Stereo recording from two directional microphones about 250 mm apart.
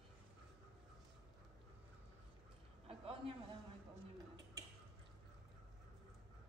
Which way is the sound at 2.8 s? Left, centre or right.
Right.